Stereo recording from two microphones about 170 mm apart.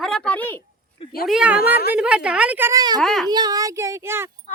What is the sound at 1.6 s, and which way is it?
Speech, 65° left (ahead or behind).